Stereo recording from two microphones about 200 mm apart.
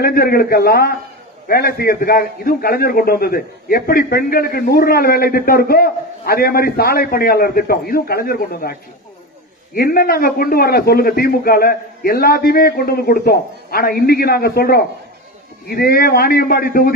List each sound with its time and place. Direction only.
0.0 s a man's voice: 50° left (ahead or behind)
9.8 s a man's voice: 50° left (ahead or behind)